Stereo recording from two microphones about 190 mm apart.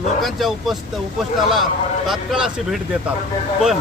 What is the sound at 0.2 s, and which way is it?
Speech, centre (ahead or behind).